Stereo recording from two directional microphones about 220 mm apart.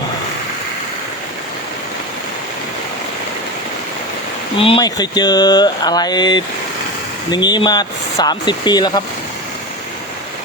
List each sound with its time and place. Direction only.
4.5 s speech: 25° left (ahead or behind)